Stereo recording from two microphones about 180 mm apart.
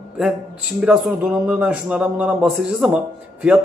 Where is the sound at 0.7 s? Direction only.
5° right (ahead or behind).